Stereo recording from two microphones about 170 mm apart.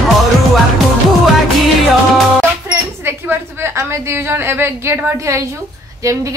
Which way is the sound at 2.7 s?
15° right (ahead or behind).